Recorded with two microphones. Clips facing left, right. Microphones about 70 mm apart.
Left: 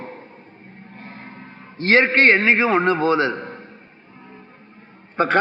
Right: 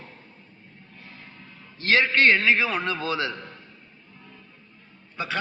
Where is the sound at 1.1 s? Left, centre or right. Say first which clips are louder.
Left 8 dB; left.